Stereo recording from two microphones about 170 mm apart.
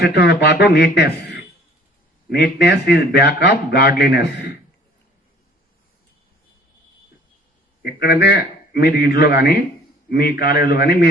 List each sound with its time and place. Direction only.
0.0 s a man's voice: 75° left (ahead or behind)
2.4 s a man's voice: 80° left
7.8 s a man's voice: 65° left (ahead or behind)